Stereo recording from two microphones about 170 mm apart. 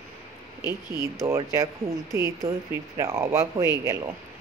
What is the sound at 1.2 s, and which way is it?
Speech, 20° right (ahead or behind).